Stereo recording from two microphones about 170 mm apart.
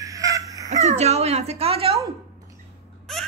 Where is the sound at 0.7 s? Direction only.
40° right (ahead or behind).